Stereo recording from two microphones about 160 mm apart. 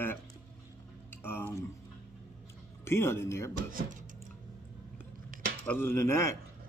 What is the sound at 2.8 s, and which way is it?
Speech, 15° left (ahead or behind).